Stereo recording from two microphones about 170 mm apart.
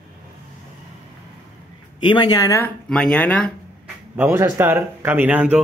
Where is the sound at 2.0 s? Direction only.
25° left (ahead or behind).